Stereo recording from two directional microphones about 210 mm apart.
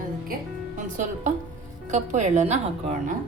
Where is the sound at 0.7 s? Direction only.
35° right (ahead or behind).